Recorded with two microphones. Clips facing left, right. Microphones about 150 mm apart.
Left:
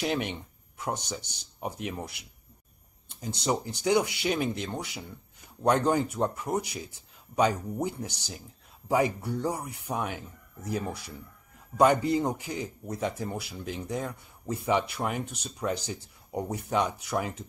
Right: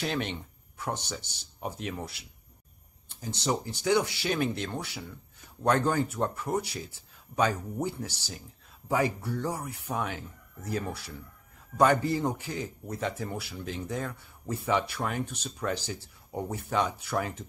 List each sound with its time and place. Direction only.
0.0 s a man's voice: 15° left (ahead or behind)